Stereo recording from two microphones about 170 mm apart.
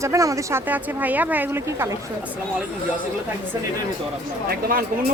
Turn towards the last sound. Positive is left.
turn(degrees=-55)  # may be behind; listen again after turning